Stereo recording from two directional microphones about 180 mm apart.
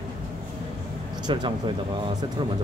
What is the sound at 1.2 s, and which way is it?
Speech, 25° right (ahead or behind).